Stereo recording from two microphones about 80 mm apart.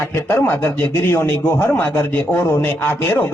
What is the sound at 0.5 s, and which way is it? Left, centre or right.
Speech, left.